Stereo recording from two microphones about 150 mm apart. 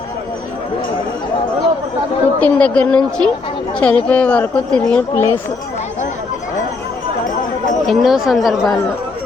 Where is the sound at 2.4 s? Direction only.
10° left (ahead or behind).